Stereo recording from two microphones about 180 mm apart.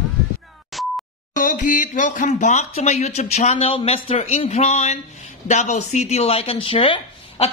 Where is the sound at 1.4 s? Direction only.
45° left (ahead or behind).